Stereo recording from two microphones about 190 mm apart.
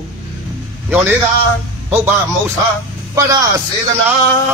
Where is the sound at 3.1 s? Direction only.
20° right (ahead or behind).